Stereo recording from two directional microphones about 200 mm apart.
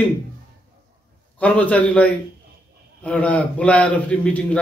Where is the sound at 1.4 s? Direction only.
5° left (ahead or behind).